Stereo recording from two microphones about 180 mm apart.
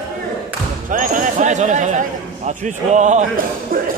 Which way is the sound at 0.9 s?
45° right (ahead or behind).